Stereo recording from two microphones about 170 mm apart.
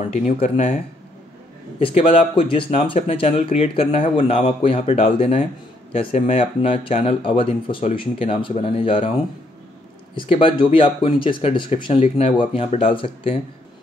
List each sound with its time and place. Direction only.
0.1 s speech: 40° left (ahead or behind)
1.8 s speech: 30° left (ahead or behind)
10.1 s speech: 30° left (ahead or behind)